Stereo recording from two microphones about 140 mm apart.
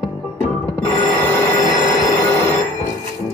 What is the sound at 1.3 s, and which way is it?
Train wheels squealing, 20° left (ahead or behind).